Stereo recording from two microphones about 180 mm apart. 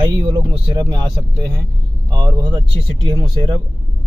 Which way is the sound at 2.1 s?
25° right (ahead or behind).